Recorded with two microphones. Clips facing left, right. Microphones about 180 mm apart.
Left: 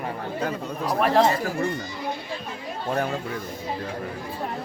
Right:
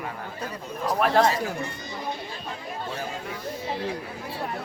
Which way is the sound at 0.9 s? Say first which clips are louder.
Left 1 dB; centre (ahead or behind).